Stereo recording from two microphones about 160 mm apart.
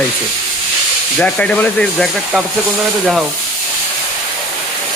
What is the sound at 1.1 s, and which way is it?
Speech, 5° left (ahead or behind).